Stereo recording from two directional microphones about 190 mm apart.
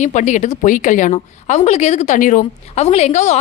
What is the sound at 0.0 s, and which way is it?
A woman's voice, 40° left (ahead or behind).